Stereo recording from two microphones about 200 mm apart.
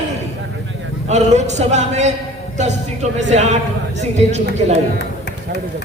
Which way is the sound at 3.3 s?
35° right (ahead or behind).